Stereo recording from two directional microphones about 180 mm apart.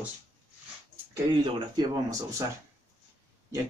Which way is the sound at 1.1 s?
25° right (ahead or behind).